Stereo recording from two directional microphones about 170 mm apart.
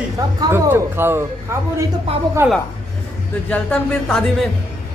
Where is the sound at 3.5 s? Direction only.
5° left (ahead or behind).